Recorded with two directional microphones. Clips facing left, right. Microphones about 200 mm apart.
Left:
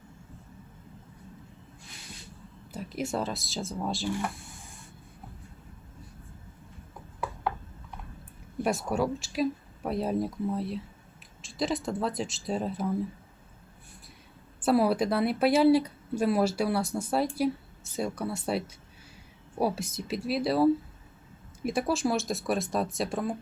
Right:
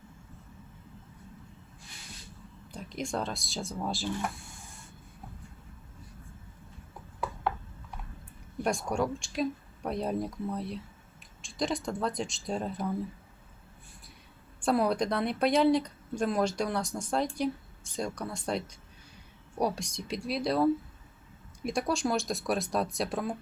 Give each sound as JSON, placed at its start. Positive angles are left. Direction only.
{"t": 2.7, "sound": "speech", "side_deg": 5}
{"t": 8.6, "sound": "speech", "side_deg": 5}
{"t": 14.6, "sound": "speech", "side_deg": 5}